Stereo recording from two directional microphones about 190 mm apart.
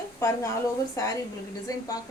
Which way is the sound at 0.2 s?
15° left (ahead or behind).